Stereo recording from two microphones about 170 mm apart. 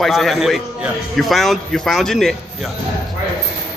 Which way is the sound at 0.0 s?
Centre (ahead or behind).